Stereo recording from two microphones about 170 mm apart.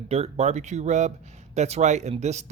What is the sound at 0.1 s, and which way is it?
Speech, 40° right (ahead or behind).